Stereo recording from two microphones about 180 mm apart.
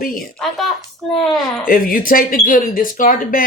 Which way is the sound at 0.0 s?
55° left (ahead or behind).